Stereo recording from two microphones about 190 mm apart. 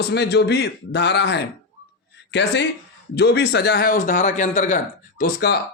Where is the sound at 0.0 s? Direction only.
60° left (ahead or behind).